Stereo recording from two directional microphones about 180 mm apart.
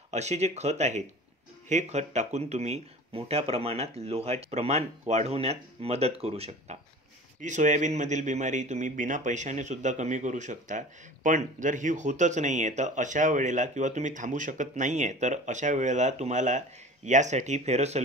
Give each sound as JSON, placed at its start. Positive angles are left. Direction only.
{"t": 0.1, "sound": "speech", "side_deg": -40}